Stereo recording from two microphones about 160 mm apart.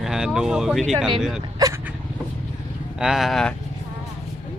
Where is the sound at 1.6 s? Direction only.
20° right (ahead or behind).